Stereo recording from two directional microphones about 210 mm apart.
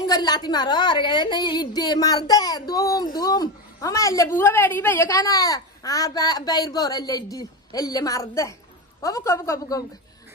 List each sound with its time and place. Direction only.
0.0 s a woman's voice: 20° left (ahead or behind)